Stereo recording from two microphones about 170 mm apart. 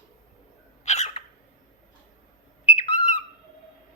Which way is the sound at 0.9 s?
40° left (ahead or behind).